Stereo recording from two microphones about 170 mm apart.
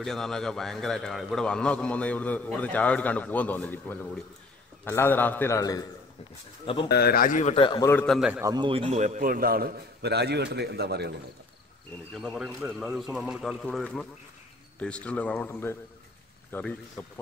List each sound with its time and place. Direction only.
0.0 s a man's voice: centre (ahead or behind); by 5.9 s 20° left (ahead or behind)
6.6 s speech: 30° left (ahead or behind)
6.9 s a man's voice: 65° left (ahead or behind); by 7.5 s 50° left (ahead or behind)
7.5 s a man's voice: 25° left (ahead or behind)
7.9 s a man's voice: 10° left (ahead or behind)
8.2 s a man's voice: 10° right (ahead or behind)
8.5 s a man's voice: 30° right (ahead or behind); by 11.1 s 75° right (ahead or behind)
12.2 s a man's voice: 5° right (ahead or behind)